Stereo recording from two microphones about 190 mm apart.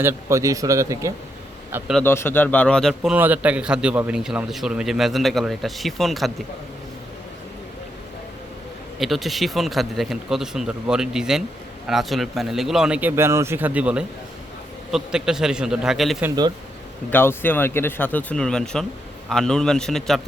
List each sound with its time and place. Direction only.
0.0 s speech: 15° right (ahead or behind)
2.0 s a man's voice: 10° left (ahead or behind)
9.0 s a man's voice: centre (ahead or behind)
17.1 s a man's voice: 10° left (ahead or behind)